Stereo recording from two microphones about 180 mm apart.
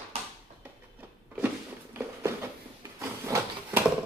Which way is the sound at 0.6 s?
10° right (ahead or behind).